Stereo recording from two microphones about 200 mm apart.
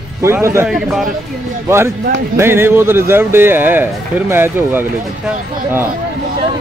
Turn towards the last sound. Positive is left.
turn(degrees=-10)  # may be behind; listen again after turning